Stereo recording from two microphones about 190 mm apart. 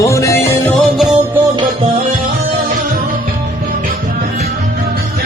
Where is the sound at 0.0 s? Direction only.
15° left (ahead or behind).